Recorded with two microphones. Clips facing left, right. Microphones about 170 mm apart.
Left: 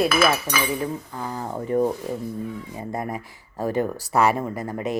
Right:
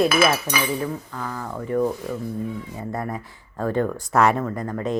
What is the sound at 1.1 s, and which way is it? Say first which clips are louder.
Speech: left 1 dB; 25° left (ahead or behind).